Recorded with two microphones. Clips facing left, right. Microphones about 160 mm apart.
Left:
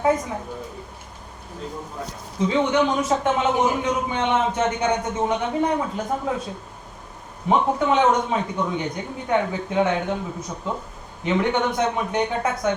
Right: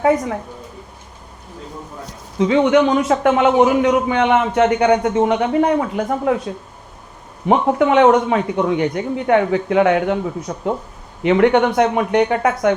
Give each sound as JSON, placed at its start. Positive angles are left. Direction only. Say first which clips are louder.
{"t": 0.0, "sound": "a man's voice", "louder": "right 5 dB", "side_deg": -70}
{"t": 2.4, "sound": "a man's voice", "louder": "right 6 dB", "side_deg": -70}
{"t": 7.4, "sound": "a man's voice", "louder": "right 5 dB", "side_deg": -70}